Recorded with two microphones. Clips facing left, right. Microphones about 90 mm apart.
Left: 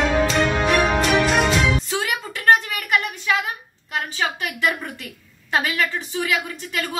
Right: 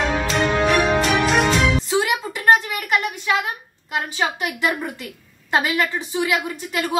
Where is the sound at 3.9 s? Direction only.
15° right (ahead or behind).